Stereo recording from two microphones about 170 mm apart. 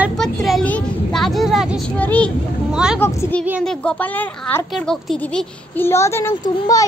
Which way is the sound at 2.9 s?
15° left (ahead or behind).